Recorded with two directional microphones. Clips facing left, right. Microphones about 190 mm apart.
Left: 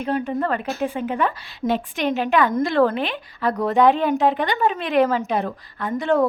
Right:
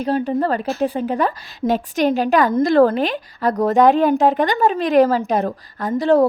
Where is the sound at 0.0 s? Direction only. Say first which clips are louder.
Right 4 dB; 35° right (ahead or behind).